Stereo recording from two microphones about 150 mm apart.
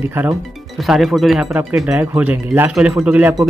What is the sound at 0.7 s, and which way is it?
Speech, centre (ahead or behind).